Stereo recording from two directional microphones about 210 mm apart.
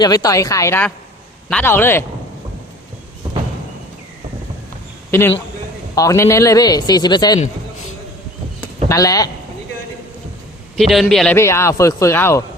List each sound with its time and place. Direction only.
0.0 s a man's voice: 20° left (ahead or behind)
5.9 s a man's voice: 15° left (ahead or behind)
8.9 s a man's voice: 15° left (ahead or behind)
10.8 s a man's voice: centre (ahead or behind)